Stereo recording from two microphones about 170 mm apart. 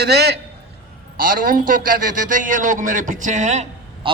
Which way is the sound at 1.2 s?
55° right (ahead or behind).